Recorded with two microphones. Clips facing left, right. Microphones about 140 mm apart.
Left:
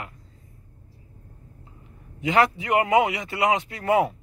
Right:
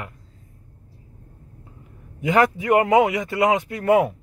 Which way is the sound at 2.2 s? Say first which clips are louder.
Right 2 dB; 45° right (ahead or behind).